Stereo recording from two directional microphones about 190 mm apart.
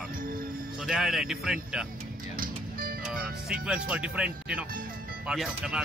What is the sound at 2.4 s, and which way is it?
Music, 50° right (ahead or behind).